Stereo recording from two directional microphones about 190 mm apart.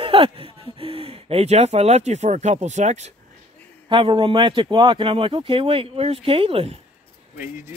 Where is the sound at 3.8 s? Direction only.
25° right (ahead or behind).